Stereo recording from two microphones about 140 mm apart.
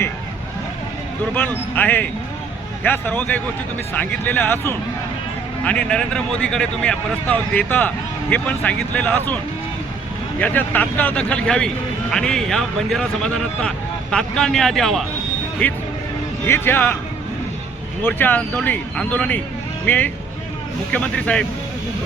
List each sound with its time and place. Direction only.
1.3 s speech: 15° left (ahead or behind)
10.4 s speech: 15° left (ahead or behind)
18.0 s speech: 15° left (ahead or behind)